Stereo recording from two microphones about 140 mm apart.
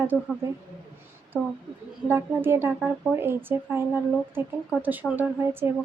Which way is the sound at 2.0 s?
15° right (ahead or behind).